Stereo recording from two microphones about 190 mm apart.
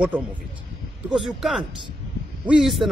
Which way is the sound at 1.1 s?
5° right (ahead or behind).